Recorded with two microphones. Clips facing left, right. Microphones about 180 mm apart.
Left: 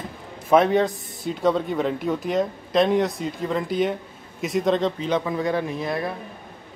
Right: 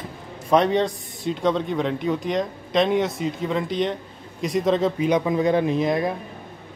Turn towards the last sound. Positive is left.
turn(degrees=-20)  # may be behind; listen again after turning